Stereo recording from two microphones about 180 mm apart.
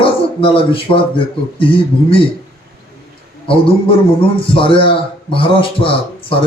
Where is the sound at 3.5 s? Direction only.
30° left (ahead or behind).